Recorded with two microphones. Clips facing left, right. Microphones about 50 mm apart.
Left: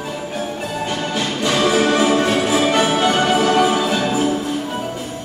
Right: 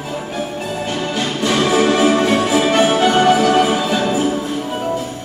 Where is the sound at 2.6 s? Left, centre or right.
Centre.